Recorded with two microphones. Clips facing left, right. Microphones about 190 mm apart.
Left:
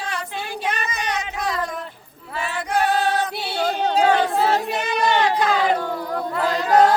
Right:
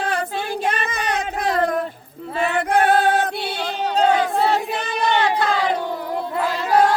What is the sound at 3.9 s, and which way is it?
Crowd, 5° left (ahead or behind).